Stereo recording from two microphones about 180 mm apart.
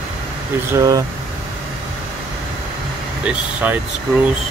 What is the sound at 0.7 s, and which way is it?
Speech, 20° right (ahead or behind).